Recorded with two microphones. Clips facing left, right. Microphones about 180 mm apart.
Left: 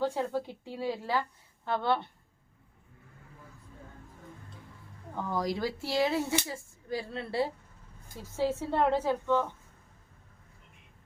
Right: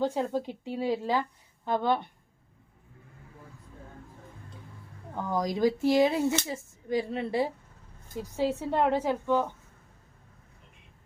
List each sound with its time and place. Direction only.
0.0 s a woman's voice: 20° right (ahead or behind)
5.1 s a woman's voice: 15° right (ahead or behind)